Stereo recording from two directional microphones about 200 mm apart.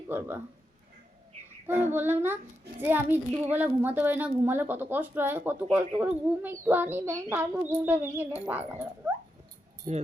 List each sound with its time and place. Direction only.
0.1 s speech: 10° right (ahead or behind)
1.6 s speech: 10° right (ahead or behind)
9.9 s speech: 35° right (ahead or behind)